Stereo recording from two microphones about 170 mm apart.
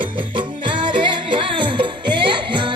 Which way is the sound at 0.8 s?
30° right (ahead or behind).